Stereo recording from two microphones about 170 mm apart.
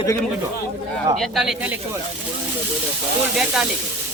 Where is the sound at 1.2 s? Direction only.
Centre (ahead or behind).